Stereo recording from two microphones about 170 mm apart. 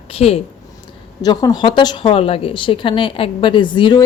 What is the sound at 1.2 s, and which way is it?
Speech, 20° left (ahead or behind).